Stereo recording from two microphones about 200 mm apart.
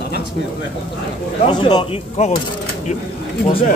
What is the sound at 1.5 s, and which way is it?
Speech, 20° left (ahead or behind).